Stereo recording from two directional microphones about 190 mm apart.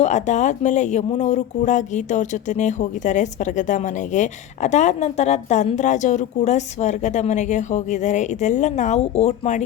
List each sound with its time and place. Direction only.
0.0 s speech: 40° left (ahead or behind)